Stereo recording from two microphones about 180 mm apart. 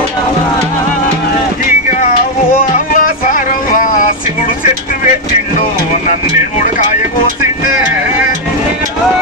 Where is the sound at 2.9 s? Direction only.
45° left (ahead or behind).